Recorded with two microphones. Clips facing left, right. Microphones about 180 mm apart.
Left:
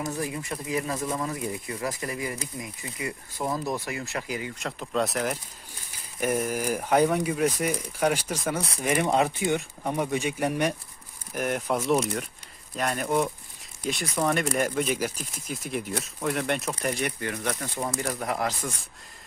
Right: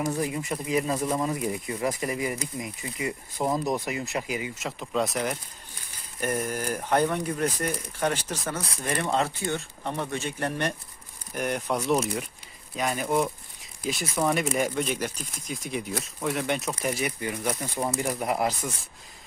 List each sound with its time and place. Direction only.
0.2 s speech: 20° right (ahead or behind)
4.5 s speech: centre (ahead or behind)